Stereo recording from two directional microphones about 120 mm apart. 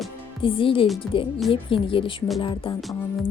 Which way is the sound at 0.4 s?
45° left (ahead or behind).